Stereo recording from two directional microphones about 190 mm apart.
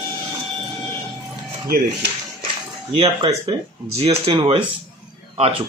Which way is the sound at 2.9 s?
30° right (ahead or behind).